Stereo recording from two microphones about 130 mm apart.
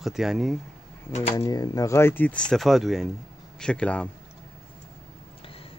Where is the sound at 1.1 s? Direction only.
60° left (ahead or behind).